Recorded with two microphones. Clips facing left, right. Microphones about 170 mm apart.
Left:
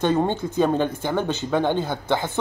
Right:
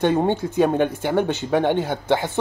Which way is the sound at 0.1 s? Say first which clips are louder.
Right 2 dB; 15° right (ahead or behind).